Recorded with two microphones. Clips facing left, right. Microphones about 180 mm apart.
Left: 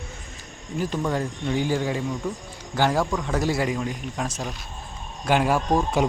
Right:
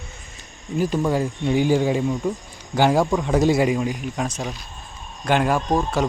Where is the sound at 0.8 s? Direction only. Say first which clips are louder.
Right 5 dB; 10° right (ahead or behind).